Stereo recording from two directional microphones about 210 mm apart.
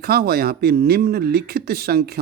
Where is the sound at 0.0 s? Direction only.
45° right (ahead or behind).